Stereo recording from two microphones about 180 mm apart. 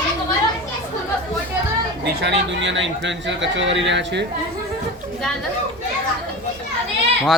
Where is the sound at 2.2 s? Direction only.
85° right.